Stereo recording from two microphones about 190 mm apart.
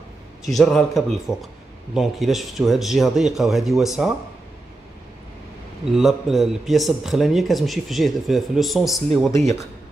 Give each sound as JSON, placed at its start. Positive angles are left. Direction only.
{"t": 0.4, "sound": "a man's voice", "side_deg": 0}
{"t": 5.9, "sound": "a man's voice", "side_deg": 0}